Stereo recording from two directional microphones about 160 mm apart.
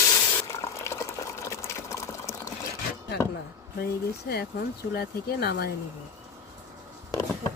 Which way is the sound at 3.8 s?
85° left.